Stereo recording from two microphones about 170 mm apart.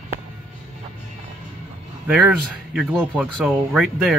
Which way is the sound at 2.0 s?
5° right (ahead or behind).